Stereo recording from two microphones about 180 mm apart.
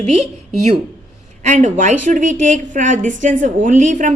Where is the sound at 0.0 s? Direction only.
40° right (ahead or behind).